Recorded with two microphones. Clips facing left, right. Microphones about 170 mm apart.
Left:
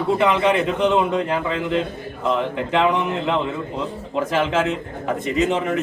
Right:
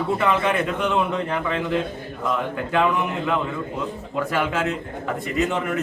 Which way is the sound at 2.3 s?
25° left (ahead or behind).